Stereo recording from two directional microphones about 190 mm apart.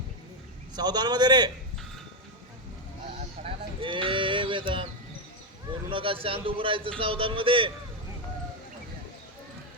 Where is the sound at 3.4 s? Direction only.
30° right (ahead or behind).